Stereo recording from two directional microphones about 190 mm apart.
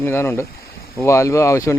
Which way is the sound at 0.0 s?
10° left (ahead or behind).